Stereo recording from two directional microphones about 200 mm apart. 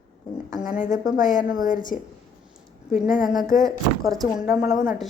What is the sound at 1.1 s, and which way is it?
Speech, 40° left (ahead or behind).